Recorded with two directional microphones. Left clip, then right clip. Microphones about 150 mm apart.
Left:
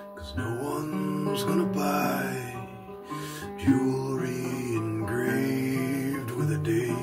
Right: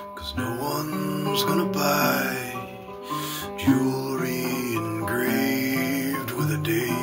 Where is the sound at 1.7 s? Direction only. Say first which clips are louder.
Right 5 dB; 10° left (ahead or behind).